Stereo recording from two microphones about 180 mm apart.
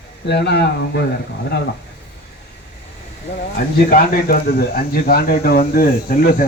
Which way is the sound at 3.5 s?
55° left (ahead or behind).